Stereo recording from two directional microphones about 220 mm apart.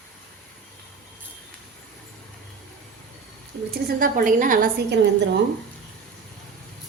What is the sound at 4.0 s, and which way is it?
Speech, 35° right (ahead or behind).